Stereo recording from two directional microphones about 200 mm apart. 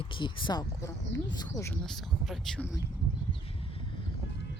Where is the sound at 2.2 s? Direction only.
Centre (ahead or behind).